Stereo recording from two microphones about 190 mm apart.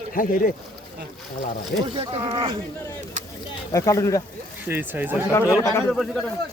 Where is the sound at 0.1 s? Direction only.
45° left (ahead or behind).